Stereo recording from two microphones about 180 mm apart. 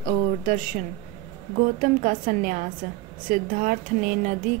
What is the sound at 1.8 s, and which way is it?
Speech, 50° right (ahead or behind).